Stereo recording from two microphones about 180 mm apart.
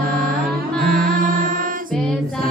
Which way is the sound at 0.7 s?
50° right (ahead or behind).